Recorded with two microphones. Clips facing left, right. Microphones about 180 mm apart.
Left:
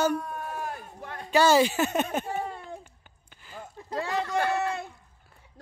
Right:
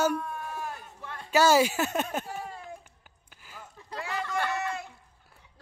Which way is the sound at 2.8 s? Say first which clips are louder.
Left 4 dB; 5° right (ahead or behind).